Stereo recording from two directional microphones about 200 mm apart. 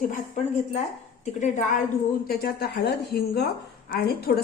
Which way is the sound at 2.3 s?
50° left (ahead or behind).